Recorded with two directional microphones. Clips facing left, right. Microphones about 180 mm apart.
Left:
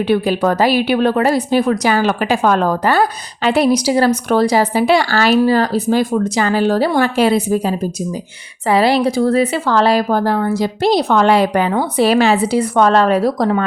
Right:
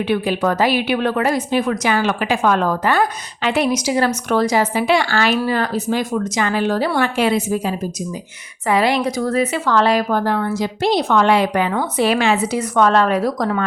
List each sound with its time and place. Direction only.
0.1 s a woman's voice: 35° left (ahead or behind)